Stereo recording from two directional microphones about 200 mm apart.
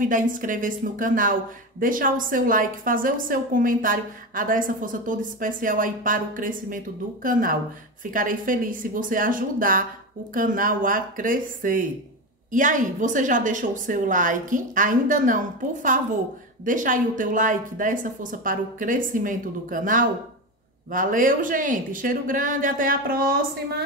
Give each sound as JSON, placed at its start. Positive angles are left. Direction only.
{"t": 0.0, "sound": "a woman's voice", "side_deg": -40}